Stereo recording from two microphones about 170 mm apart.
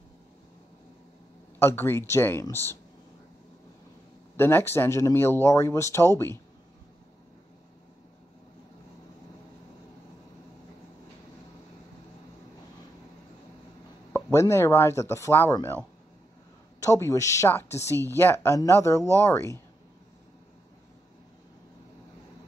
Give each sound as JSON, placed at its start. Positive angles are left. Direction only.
{"t": 1.6, "sound": "speech", "side_deg": 15}
{"t": 4.4, "sound": "speech", "side_deg": 15}
{"t": 14.1, "sound": "speech", "side_deg": 15}
{"t": 16.8, "sound": "speech", "side_deg": 15}